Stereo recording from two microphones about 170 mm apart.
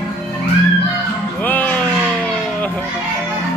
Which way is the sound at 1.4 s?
10° left (ahead or behind).